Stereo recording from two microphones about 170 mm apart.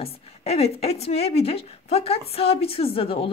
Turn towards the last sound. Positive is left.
turn(degrees=35)  # may be behind; listen again after turning